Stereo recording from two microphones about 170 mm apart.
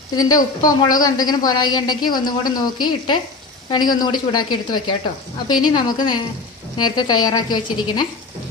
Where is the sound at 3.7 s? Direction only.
25° left (ahead or behind).